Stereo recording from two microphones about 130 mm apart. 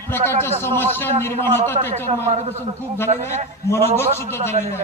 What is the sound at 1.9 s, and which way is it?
A man's voice, 65° right (ahead or behind).